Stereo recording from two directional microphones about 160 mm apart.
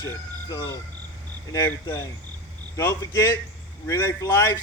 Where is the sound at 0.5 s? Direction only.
20° left (ahead or behind).